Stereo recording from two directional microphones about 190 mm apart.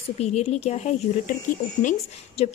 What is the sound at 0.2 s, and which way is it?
Speech, 35° left (ahead or behind).